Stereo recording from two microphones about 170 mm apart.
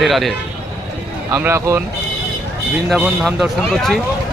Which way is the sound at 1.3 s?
15° right (ahead or behind).